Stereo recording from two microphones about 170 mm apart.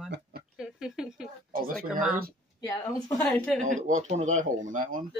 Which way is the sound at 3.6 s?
45° right (ahead or behind).